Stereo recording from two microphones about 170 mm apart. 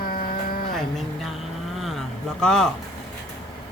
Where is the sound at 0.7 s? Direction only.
Centre (ahead or behind).